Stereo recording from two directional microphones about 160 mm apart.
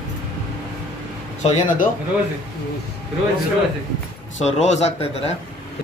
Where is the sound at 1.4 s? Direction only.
55° left (ahead or behind).